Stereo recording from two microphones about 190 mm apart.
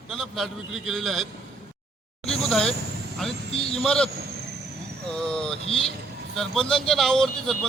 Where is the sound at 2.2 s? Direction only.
5° left (ahead or behind).